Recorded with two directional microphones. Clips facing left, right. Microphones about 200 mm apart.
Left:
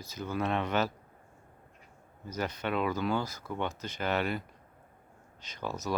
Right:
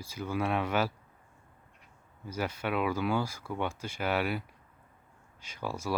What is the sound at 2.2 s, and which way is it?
Speech, 10° right (ahead or behind).